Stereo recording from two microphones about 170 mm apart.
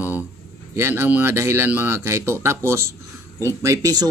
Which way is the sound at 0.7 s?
15° right (ahead or behind).